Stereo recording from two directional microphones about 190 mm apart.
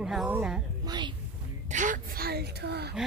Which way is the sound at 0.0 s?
Centre (ahead or behind).